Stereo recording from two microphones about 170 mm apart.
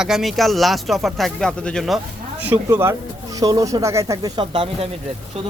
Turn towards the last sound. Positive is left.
turn(degrees=-20)  # may be behind; listen again after turning